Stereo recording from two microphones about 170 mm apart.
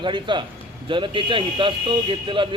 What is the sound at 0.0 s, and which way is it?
Speech, 30° right (ahead or behind).